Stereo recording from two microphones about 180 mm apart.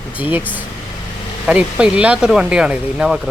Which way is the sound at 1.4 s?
5° right (ahead or behind).